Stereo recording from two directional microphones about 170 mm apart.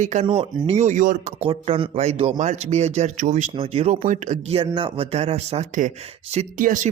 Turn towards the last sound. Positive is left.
turn(degrees=-50)  # may be behind; listen again after turning